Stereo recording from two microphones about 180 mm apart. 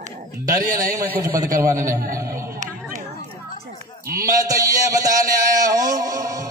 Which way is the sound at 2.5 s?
45° right (ahead or behind).